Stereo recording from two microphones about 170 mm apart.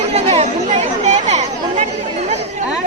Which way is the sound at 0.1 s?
35° right (ahead or behind).